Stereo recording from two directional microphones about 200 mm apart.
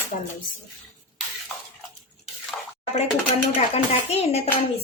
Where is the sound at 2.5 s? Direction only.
5° left (ahead or behind).